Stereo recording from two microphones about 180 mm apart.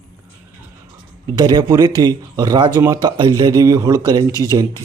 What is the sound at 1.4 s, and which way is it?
Speech, 20° right (ahead or behind).